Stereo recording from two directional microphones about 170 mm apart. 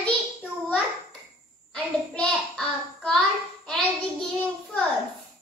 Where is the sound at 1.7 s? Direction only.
5° left (ahead or behind).